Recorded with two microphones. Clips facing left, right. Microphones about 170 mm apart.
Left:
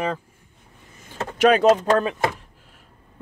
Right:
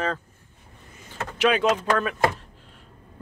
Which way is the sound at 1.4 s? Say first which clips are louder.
Left 6 dB; 45° left (ahead or behind).